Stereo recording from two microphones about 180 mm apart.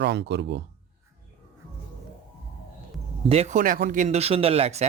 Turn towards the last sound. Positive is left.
turn(degrees=-35)  # may be behind; listen again after turning